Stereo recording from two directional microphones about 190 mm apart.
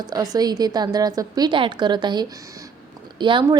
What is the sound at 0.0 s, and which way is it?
A woman's voice, 20° right (ahead or behind).